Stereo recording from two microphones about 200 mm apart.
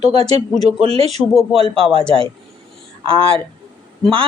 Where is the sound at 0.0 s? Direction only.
30° right (ahead or behind).